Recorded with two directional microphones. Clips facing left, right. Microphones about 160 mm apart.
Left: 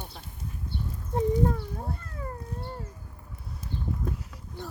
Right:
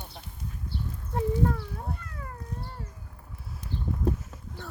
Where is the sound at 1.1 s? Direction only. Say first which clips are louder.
Left 2 dB; 20° left (ahead or behind).